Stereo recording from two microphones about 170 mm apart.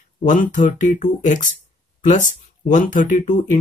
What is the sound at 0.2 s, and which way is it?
Speech, 50° left (ahead or behind).